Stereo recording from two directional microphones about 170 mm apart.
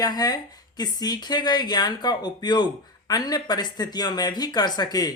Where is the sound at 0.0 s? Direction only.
25° left (ahead or behind).